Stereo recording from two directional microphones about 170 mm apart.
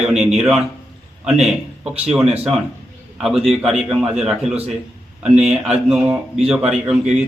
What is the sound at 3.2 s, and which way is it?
A man's voice, 5° right (ahead or behind).